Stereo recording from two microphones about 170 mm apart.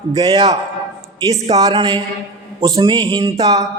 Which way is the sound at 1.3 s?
20° right (ahead or behind).